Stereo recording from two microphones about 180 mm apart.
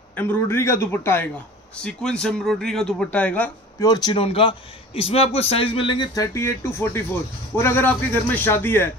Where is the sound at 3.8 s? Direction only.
25° left (ahead or behind).